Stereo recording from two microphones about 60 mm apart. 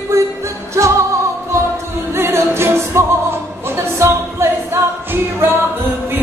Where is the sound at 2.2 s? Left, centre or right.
Right.